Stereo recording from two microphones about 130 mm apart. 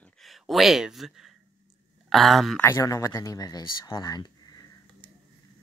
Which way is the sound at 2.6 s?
20° left (ahead or behind).